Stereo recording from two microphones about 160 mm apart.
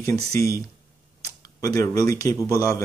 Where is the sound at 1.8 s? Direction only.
20° left (ahead or behind).